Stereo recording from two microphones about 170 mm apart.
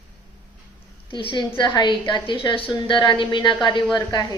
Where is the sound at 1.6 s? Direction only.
25° left (ahead or behind).